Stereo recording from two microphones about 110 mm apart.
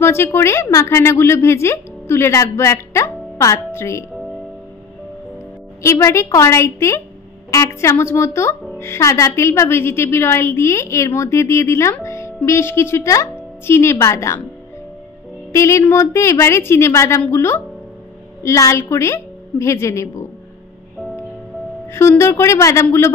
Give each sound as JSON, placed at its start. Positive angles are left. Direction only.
{"t": 0.0, "sound": "a woman's voice", "side_deg": 25}
{"t": 5.8, "sound": "a woman's voice", "side_deg": 25}
{"t": 15.5, "sound": "a woman's voice", "side_deg": 25}
{"t": 21.9, "sound": "a woman's voice", "side_deg": 25}